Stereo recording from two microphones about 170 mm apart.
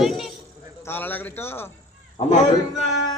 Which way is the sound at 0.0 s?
Centre (ahead or behind).